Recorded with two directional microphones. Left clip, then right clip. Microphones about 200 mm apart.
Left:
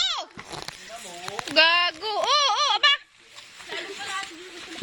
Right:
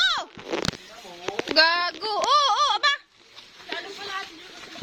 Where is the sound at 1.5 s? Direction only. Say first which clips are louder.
Left 1 dB; 10° right (ahead or behind).